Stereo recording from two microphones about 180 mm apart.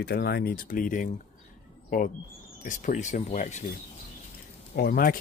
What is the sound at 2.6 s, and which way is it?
Speech, 45° left (ahead or behind).